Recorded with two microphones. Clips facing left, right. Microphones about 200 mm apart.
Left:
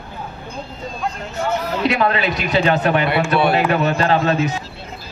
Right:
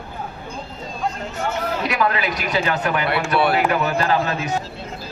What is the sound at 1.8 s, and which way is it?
Speech, 25° left (ahead or behind).